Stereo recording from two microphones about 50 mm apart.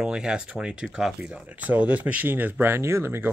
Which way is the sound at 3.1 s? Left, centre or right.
Right.